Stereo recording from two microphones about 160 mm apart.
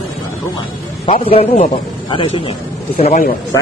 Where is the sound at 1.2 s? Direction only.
40° left (ahead or behind).